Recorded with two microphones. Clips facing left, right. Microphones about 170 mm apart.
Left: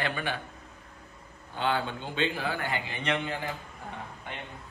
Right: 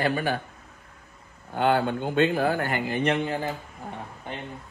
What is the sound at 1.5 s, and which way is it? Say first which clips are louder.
A man's voice: right 7 dB; 55° right (ahead or behind).